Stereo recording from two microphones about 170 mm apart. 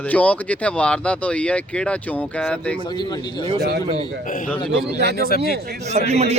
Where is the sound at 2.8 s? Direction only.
25° left (ahead or behind).